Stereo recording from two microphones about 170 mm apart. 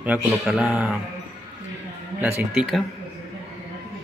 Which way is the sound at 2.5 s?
5° right (ahead or behind).